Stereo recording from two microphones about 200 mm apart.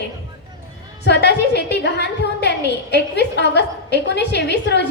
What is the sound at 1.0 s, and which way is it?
A woman's voice, 60° left (ahead or behind).